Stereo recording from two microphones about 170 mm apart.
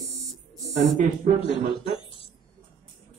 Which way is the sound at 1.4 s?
30° left (ahead or behind).